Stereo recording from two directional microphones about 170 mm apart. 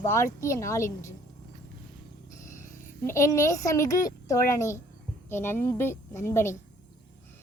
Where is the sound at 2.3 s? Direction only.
15° left (ahead or behind).